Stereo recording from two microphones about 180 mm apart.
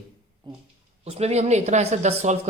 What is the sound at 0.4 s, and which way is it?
Speech, 25° right (ahead or behind).